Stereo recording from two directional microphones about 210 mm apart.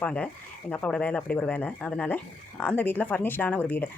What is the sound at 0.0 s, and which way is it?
Speech, 5° left (ahead or behind).